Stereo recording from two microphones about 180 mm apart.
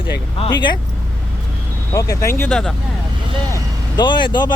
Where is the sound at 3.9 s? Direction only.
25° left (ahead or behind).